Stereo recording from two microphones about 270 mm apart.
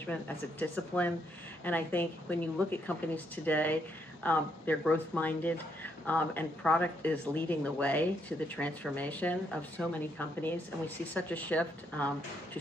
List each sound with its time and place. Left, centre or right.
0.0 s a woman's voice: centre